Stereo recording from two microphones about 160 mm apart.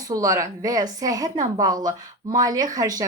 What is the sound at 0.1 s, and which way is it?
Speech, 20° right (ahead or behind).